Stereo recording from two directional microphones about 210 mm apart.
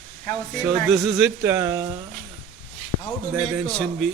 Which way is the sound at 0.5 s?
5° right (ahead or behind).